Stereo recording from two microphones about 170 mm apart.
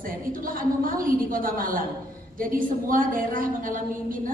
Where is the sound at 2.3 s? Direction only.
55° right (ahead or behind).